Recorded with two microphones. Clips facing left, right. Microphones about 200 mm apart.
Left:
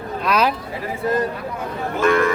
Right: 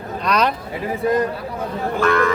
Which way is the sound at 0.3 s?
5° left (ahead or behind).